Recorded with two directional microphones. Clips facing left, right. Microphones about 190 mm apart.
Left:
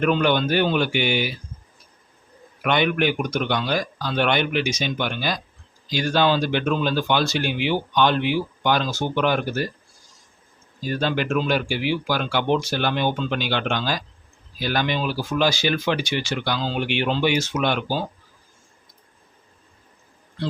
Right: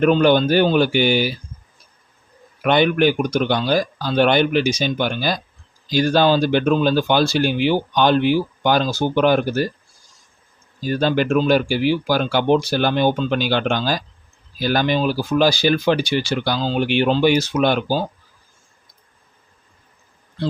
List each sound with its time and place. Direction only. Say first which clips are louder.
0.0 s speech: right 6 dB; 35° right (ahead or behind)
2.6 s speech: right 5 dB; 35° right (ahead or behind)
10.8 s speech: right 5 dB; 35° right (ahead or behind)